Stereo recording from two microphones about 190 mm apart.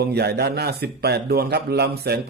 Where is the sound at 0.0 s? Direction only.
60° right (ahead or behind).